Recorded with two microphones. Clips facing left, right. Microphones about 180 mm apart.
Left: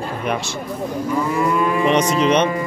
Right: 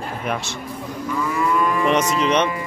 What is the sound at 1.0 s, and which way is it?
Moo, 30° left (ahead or behind).